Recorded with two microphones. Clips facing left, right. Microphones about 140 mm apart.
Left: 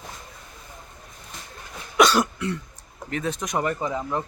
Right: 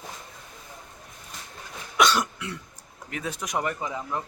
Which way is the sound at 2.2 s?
5° right (ahead or behind).